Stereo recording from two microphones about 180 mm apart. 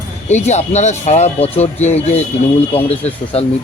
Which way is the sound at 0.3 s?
40° left (ahead or behind).